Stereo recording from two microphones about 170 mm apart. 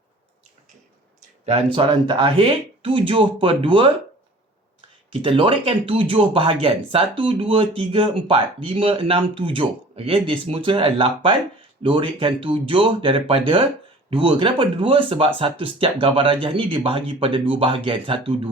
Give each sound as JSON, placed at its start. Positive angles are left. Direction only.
{"t": 1.5, "sound": "speech", "side_deg": -35}
{"t": 5.2, "sound": "speech", "side_deg": -30}